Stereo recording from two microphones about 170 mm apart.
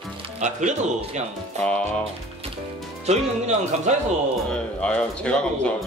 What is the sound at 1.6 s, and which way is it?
Speech, 5° left (ahead or behind).